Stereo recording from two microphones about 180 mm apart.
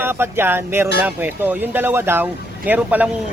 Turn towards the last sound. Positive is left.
turn(degrees=-5)  # may be behind; listen again after turning